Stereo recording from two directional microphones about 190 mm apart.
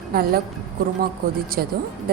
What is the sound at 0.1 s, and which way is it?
Speech, 50° right (ahead or behind).